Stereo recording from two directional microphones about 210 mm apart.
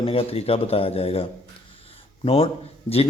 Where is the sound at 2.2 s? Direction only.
30° left (ahead or behind).